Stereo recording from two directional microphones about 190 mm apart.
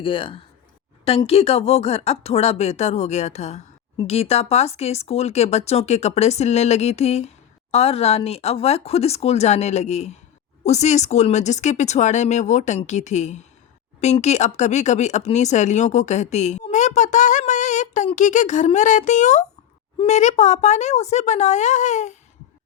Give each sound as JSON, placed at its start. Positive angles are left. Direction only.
{"t": 0.0, "sound": "speech", "side_deg": 25}